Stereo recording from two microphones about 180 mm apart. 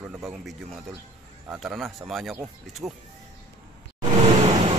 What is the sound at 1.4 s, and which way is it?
Speech, 5° right (ahead or behind).